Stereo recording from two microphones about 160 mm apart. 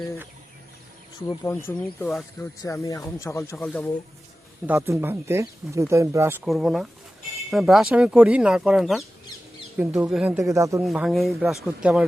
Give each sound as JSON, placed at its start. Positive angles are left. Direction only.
{"t": 1.5, "sound": "speech", "side_deg": 15}
{"t": 4.6, "sound": "speech", "side_deg": -15}
{"t": 6.4, "sound": "speech", "side_deg": -5}
{"t": 10.3, "sound": "speech", "side_deg": -20}
{"t": 10.8, "sound": "speech", "side_deg": 0}